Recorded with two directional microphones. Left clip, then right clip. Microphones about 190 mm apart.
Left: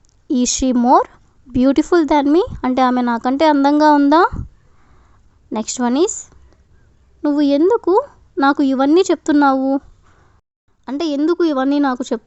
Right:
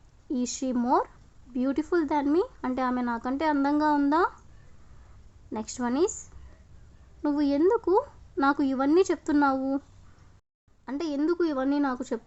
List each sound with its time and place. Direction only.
0.3 s speech: 50° left (ahead or behind)
5.5 s speech: 45° left (ahead or behind)
10.8 s speech: 45° left (ahead or behind)